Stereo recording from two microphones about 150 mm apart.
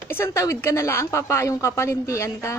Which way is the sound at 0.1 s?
15° left (ahead or behind).